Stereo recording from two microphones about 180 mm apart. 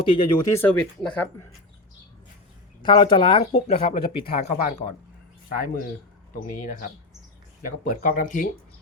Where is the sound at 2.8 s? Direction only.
25° left (ahead or behind).